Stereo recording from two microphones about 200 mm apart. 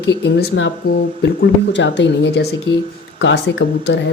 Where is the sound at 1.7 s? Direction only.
60° left (ahead or behind).